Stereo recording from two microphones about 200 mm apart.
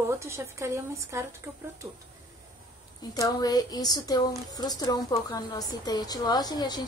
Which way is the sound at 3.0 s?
20° left (ahead or behind).